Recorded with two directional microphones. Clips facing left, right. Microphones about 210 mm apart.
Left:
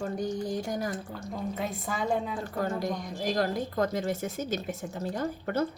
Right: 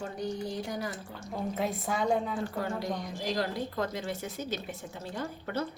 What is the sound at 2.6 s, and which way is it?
A woman's voice, 45° left (ahead or behind).